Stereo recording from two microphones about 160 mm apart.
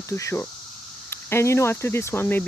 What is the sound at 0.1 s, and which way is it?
Speech, 15° left (ahead or behind).